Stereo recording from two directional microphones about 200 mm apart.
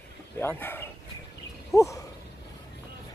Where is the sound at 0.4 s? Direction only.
10° left (ahead or behind).